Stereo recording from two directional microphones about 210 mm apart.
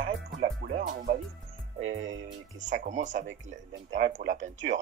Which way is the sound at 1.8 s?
35° right (ahead or behind).